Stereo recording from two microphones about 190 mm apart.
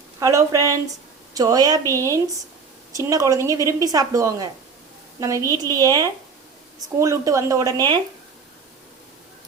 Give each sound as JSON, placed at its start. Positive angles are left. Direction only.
{"t": 0.2, "sound": "a woman's voice", "side_deg": -15}